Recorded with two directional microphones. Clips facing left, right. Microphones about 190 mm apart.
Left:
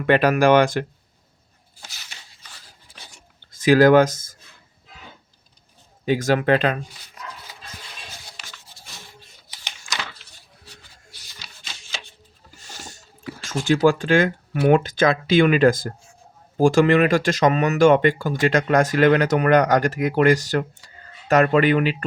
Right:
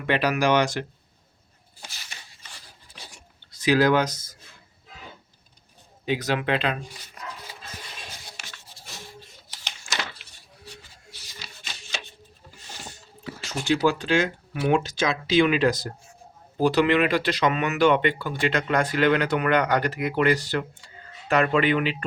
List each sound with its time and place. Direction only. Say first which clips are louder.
0.1 s speech: left 6 dB; 50° left (ahead or behind)
3.5 s speech: left 7 dB; 50° left (ahead or behind)
6.1 s speech: left 6 dB; 45° left (ahead or behind)
12.5 s a sound: left 1 dB; 45° left (ahead or behind)
13.8 s speech: left 7 dB; 50° left (ahead or behind)